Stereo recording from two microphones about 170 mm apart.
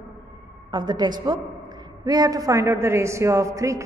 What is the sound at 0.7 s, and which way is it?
A woman's voice, 25° right (ahead or behind).